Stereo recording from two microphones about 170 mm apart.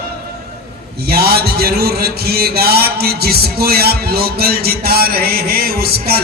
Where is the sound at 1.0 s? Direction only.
65° right (ahead or behind).